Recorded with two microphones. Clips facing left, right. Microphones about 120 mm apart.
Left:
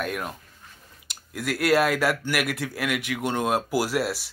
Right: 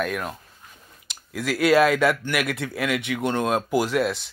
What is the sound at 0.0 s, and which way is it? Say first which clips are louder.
Speech: right 3 dB; 10° left (ahead or behind).